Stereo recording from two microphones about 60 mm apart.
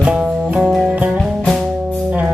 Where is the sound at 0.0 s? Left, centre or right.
Centre.